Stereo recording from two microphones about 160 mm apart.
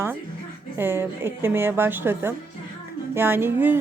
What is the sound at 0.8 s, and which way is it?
A woman's voice, 15° right (ahead or behind).